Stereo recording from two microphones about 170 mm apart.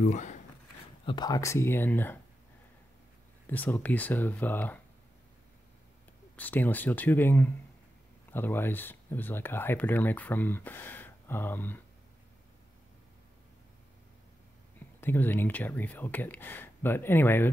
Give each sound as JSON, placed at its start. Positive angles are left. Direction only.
{"t": 0.0, "sound": "speech", "side_deg": 45}
{"t": 1.0, "sound": "speech", "side_deg": 25}
{"t": 3.4, "sound": "speech", "side_deg": 10}
{"t": 6.3, "sound": "speech", "side_deg": 10}
{"t": 15.0, "sound": "speech", "side_deg": 10}